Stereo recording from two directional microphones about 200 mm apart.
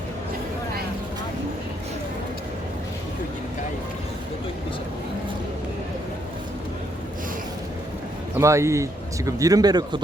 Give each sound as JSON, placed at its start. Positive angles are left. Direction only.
{"t": 8.4, "sound": "a man's voice", "side_deg": -15}